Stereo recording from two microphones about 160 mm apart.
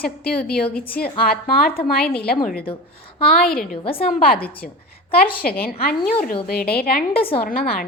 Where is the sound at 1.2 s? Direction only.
70° left (ahead or behind).